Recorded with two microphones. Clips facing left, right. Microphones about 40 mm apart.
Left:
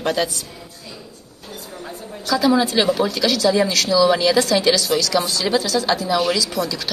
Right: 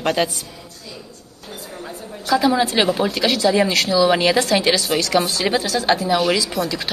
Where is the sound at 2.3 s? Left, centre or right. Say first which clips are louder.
Even; right.